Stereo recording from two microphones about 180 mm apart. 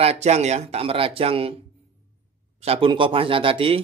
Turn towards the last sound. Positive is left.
turn(degrees=-30)  # may be behind; listen again after turning